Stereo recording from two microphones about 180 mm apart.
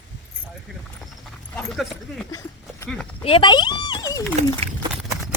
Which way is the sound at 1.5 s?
Centre (ahead or behind).